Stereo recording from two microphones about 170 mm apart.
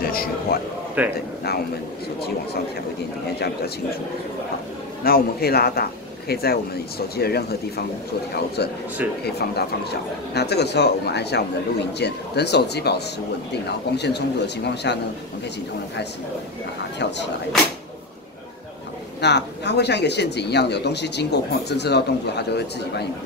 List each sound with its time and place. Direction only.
0.0 s a sound: 60° left (ahead or behind)
1.0 s speech: 10° right (ahead or behind)
5.0 s a man's voice: 65° left (ahead or behind)
9.2 s speech: 70° left (ahead or behind); by 15.0 s 90° left
17.5 s speech: 5° left (ahead or behind)
19.2 s speech: 80° left